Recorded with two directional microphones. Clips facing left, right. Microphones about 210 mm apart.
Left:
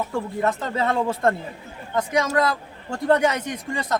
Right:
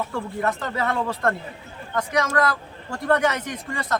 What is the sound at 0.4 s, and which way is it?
Speech, 25° left (ahead or behind).